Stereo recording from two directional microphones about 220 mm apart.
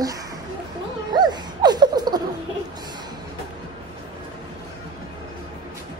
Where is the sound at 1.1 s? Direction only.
20° right (ahead or behind).